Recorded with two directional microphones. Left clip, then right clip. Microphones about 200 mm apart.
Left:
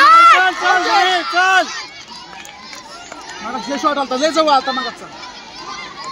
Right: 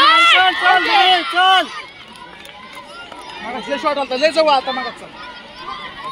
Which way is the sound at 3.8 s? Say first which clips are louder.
Even; 65° left (ahead or behind).